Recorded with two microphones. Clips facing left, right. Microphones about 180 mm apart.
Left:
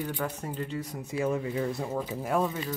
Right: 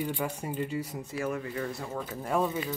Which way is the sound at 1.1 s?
20° left (ahead or behind).